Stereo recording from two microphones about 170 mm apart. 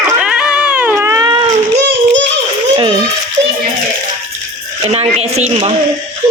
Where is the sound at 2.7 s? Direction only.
25° right (ahead or behind).